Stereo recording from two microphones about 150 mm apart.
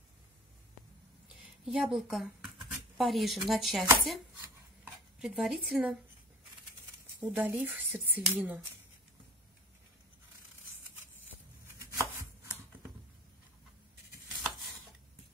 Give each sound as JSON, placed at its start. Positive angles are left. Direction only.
{"t": 1.7, "sound": "speech", "side_deg": -5}
{"t": 5.2, "sound": "speech", "side_deg": 0}
{"t": 7.2, "sound": "speech", "side_deg": -10}
{"t": 11.6, "sound": "chopping", "side_deg": -20}